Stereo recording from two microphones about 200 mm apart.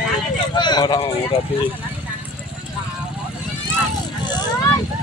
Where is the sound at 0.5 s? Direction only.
20° left (ahead or behind).